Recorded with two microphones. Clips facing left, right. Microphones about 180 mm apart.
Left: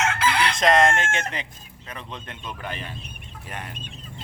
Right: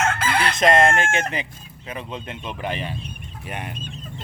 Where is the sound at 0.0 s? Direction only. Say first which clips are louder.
Right 1 dB; 50° right (ahead or behind).